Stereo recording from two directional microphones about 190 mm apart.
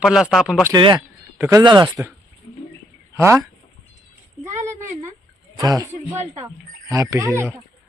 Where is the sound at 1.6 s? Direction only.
25° right (ahead or behind).